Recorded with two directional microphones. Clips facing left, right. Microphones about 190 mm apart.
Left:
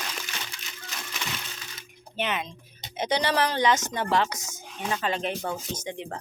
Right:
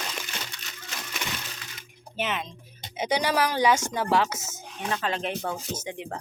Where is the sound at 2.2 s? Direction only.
Centre (ahead or behind).